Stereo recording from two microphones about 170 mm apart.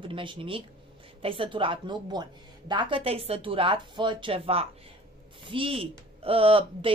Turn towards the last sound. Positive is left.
turn(degrees=-30)  # may be behind; listen again after turning